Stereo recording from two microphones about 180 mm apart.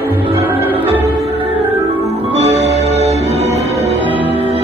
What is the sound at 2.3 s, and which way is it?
Music, 35° right (ahead or behind).